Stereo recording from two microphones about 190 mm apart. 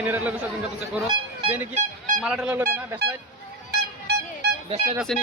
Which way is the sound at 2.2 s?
5° right (ahead or behind).